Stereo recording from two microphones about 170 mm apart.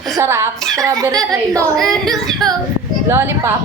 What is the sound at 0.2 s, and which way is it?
A woman's voice, 15° right (ahead or behind).